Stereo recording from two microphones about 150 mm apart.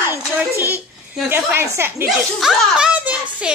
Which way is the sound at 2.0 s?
5° right (ahead or behind).